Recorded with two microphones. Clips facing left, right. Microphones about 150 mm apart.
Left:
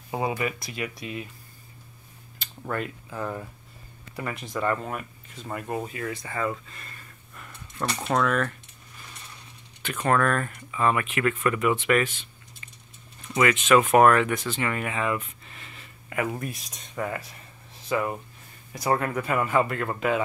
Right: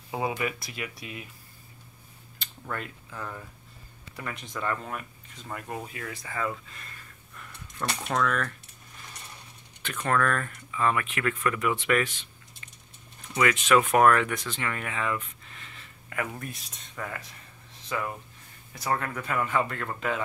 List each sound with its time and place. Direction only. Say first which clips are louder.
0.1 s speech: left 2 dB; centre (ahead or behind)
3.1 s speech: left 6 dB; 30° left (ahead or behind)
4.2 s speech: left 5 dB; 5° left (ahead or behind)
8.0 s speech: left 3 dB; 25° left (ahead or behind)
9.9 s speech: left 3 dB; 20° left (ahead or behind); by 12.3 s 5° left (ahead or behind)
12.6 s a sound: left 1 dB; 10° left (ahead or behind)
13.3 s speech: left 3 dB; 5° left (ahead or behind); by 17.1 s 20° left (ahead or behind)
17.9 s speech: left 6 dB; 10° left (ahead or behind)